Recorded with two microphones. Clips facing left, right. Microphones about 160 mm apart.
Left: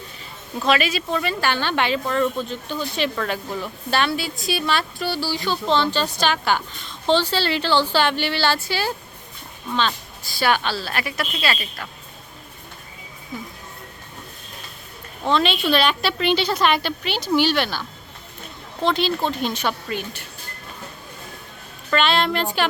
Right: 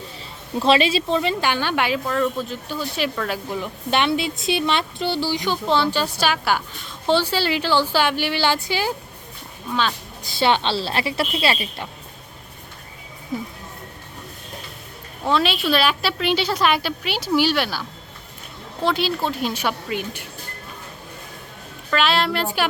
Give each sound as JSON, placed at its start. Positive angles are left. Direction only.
{"t": 0.6, "sound": "speech", "side_deg": -30}
{"t": 10.2, "sound": "a woman's voice", "side_deg": -25}
{"t": 15.2, "sound": "a woman's voice", "side_deg": -5}
{"t": 21.8, "sound": "a woman's voice", "side_deg": 0}